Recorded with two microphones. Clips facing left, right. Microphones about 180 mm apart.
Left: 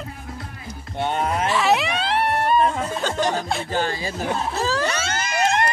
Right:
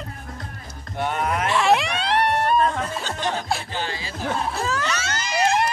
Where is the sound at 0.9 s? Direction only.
30° left (ahead or behind).